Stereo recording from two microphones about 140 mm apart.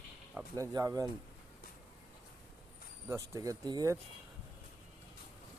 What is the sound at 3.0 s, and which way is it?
Speech, 20° right (ahead or behind).